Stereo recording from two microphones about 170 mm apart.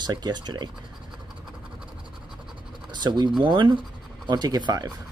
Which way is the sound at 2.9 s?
25° right (ahead or behind).